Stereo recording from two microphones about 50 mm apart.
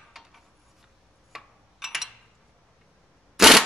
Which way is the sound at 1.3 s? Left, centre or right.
Centre.